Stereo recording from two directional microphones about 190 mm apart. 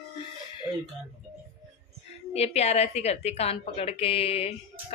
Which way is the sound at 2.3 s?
35° left (ahead or behind).